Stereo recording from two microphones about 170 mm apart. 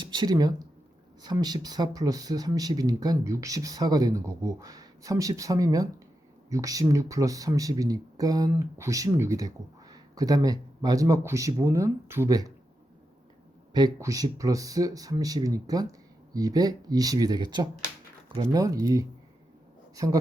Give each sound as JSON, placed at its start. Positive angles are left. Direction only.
{"t": 0.0, "sound": "speech", "side_deg": -25}
{"t": 13.7, "sound": "speech", "side_deg": -20}